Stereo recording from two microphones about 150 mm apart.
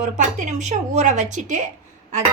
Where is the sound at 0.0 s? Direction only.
55° right (ahead or behind).